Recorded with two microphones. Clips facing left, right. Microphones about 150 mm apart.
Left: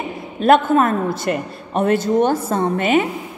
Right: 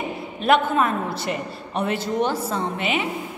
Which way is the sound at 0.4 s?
45° left (ahead or behind).